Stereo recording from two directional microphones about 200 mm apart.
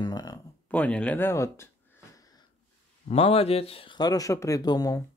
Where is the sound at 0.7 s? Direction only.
5° left (ahead or behind).